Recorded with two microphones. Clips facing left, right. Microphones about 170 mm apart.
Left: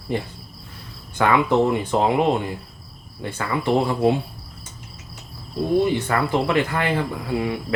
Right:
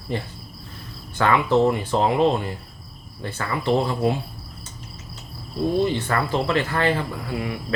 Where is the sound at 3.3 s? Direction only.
15° left (ahead or behind).